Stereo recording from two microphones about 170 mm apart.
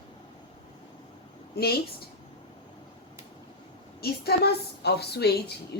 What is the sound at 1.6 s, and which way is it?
Speech, 70° left (ahead or behind).